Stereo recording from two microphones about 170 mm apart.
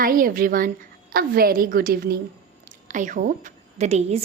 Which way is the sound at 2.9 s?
50° right (ahead or behind).